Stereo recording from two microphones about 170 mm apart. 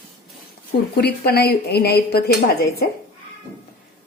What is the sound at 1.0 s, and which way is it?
Speech, 70° left (ahead or behind).